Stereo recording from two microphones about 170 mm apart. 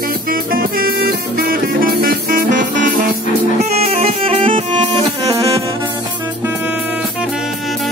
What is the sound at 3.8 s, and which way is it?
Music, 35° right (ahead or behind).